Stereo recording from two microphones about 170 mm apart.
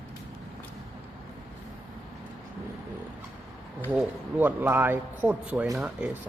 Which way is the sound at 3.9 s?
10° right (ahead or behind).